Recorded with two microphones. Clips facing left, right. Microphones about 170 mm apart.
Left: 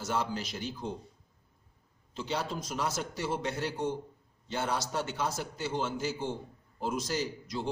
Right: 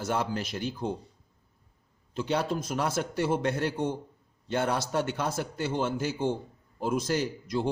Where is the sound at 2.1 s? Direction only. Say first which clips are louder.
Right 6 dB; 55° right (ahead or behind).